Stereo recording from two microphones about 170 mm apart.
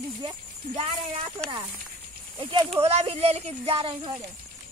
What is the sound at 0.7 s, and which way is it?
Speech, 45° right (ahead or behind).